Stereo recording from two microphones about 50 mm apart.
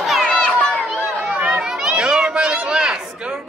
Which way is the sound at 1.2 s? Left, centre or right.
Right.